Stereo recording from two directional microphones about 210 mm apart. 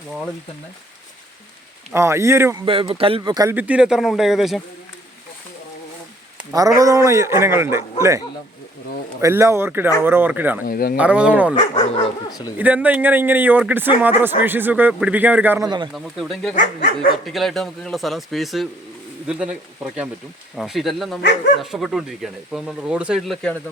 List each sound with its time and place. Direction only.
1.9 s speech: 15° right (ahead or behind)
2.6 s speech: 25° right (ahead or behind); by 4.6 s centre (ahead or behind)
6.7 s speech: 15° right (ahead or behind)
9.2 s speech: 15° right (ahead or behind)
10.7 s speech: 45° left (ahead or behind)
10.9 s speech: 5° right (ahead or behind)
11.5 s speech: 20° left (ahead or behind)
12.5 s speech: 5° right (ahead or behind)
16.6 s speech: 45° left (ahead or behind)
17.2 s speech: centre (ahead or behind)